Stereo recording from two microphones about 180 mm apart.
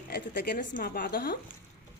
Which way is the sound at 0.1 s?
65° left (ahead or behind).